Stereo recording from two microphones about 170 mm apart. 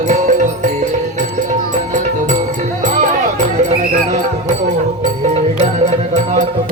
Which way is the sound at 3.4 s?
45° right (ahead or behind).